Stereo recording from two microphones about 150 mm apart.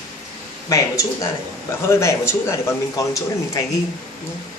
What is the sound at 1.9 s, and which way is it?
Speech, 15° left (ahead or behind).